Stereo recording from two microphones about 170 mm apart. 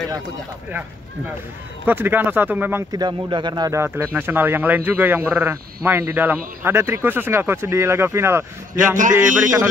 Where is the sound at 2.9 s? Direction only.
25° right (ahead or behind).